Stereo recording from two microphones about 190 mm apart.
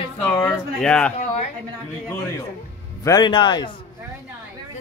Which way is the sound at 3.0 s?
20° left (ahead or behind).